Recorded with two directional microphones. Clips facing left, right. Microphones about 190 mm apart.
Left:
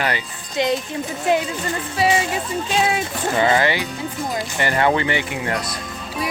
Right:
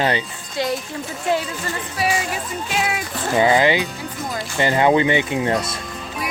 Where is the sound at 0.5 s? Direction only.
20° left (ahead or behind).